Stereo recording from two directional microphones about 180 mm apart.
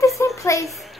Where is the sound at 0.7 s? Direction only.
Centre (ahead or behind).